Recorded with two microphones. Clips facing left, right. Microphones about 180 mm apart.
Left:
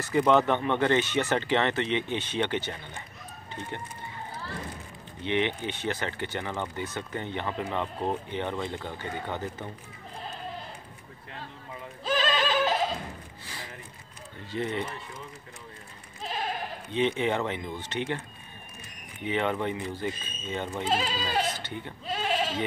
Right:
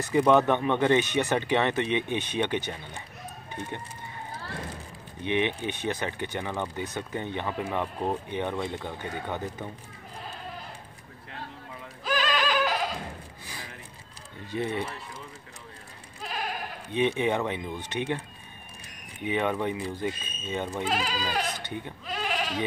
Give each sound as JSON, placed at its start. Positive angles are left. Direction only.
{"t": 0.0, "sound": "speech", "side_deg": -15}
{"t": 5.2, "sound": "speech", "side_deg": -15}
{"t": 12.0, "sound": "neigh", "side_deg": 25}
{"t": 14.5, "sound": "speech", "side_deg": -15}
{"t": 16.2, "sound": "goat", "side_deg": 25}
{"t": 17.1, "sound": "speech", "side_deg": -15}
{"t": 19.2, "sound": "speech", "side_deg": -15}
{"t": 20.9, "sound": "speech", "side_deg": 30}
{"t": 21.5, "sound": "bleat", "side_deg": -15}
{"t": 22.0, "sound": "bleat", "side_deg": 30}